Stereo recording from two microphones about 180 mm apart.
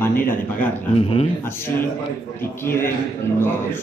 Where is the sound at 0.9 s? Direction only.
30° left (ahead or behind).